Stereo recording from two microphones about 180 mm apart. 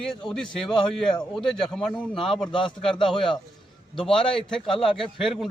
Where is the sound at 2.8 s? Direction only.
25° left (ahead or behind).